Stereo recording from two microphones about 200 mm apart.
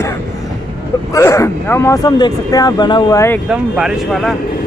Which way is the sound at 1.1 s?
15° left (ahead or behind).